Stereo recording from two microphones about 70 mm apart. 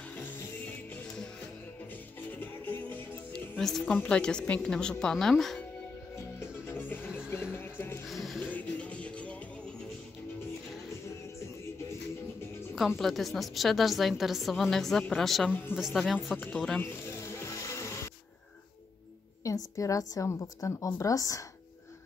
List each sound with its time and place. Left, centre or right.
2.3 s music: left
3.3 s music: centre
3.8 s a woman's voice: left
4.2 s a woman's voice: centre
6.4 s music: left
8.1 s a sound: centre
8.5 s music: left
12.7 s a woman's voice: centre
16.8 s music: left
19.4 s a woman's voice: left